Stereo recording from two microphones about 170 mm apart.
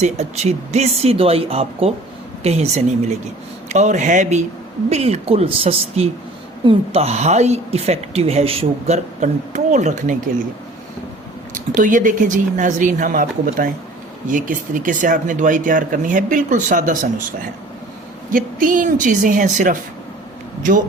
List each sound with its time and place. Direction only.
0.0 s a woman's voice: 40° right (ahead or behind)
11.7 s speech: 50° right (ahead or behind)
18.3 s speech: 55° right (ahead or behind)